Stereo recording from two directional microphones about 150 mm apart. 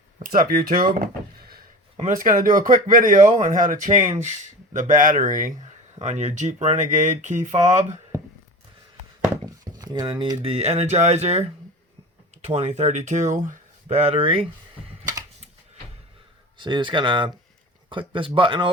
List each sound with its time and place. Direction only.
0.2 s speech: 70° right (ahead or behind); by 0.9 s 90° right
1.0 s a sound: 80° right
2.0 s a man's voice: 60° right (ahead or behind)
6.0 s speech: 50° right (ahead or behind)
9.3 s a sound: 25° right (ahead or behind)
10.5 s speech: 45° right (ahead or behind)
16.6 s speech: 30° right (ahead or behind)